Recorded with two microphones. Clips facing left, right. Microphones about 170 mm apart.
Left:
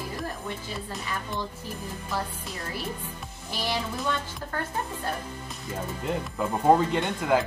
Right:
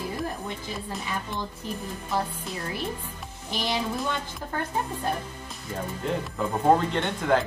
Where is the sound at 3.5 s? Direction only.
20° right (ahead or behind).